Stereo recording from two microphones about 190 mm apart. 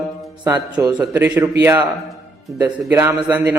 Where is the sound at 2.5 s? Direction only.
15° right (ahead or behind).